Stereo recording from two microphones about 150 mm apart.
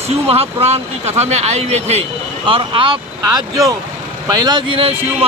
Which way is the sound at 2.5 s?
35° right (ahead or behind).